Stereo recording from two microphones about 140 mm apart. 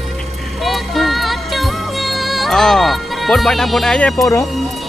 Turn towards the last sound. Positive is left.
turn(degrees=5)  # may be behind; listen again after turning